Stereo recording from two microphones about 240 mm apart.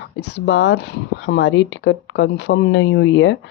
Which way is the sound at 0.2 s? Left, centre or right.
Left.